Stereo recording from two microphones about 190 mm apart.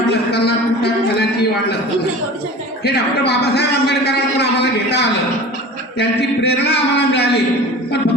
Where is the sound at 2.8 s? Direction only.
60° left (ahead or behind).